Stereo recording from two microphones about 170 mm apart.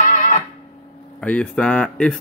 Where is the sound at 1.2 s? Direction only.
10° left (ahead or behind).